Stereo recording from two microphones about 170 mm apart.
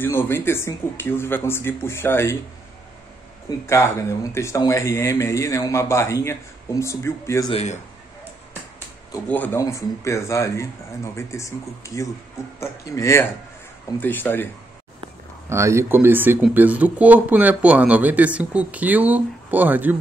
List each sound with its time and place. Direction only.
0.0 s speech: 15° left (ahead or behind)
3.4 s speech: 15° left (ahead or behind)
7.4 s a man's voice: 40° left (ahead or behind)
9.1 s speech: 10° left (ahead or behind)
15.5 s speech: 15° right (ahead or behind)